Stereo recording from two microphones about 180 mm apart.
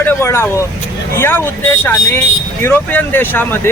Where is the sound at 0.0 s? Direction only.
15° left (ahead or behind).